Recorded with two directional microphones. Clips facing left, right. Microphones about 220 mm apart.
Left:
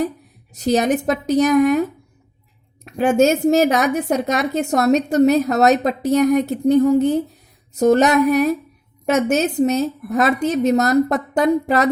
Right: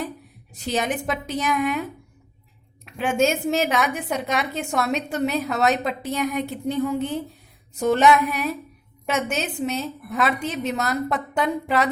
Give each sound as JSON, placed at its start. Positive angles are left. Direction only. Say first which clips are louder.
{"t": 0.5, "sound": "a woman's voice", "louder": "left 8 dB", "side_deg": 40}
{"t": 7.8, "sound": "a sound", "louder": "left 5 dB", "side_deg": 40}
{"t": 9.0, "sound": "a woman's voice", "louder": "left 8 dB", "side_deg": 40}